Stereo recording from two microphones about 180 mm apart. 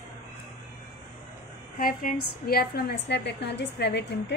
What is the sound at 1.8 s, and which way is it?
A woman's voice, 50° left (ahead or behind).